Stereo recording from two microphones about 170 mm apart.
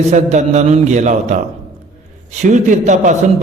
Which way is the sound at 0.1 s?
45° right (ahead or behind).